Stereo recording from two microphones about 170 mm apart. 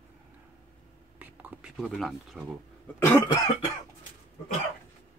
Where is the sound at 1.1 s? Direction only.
10° right (ahead or behind).